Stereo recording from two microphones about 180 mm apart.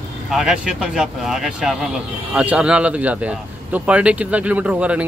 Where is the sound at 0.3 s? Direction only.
5° right (ahead or behind).